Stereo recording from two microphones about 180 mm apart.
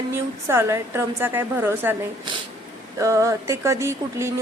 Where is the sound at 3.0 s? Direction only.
15° right (ahead or behind).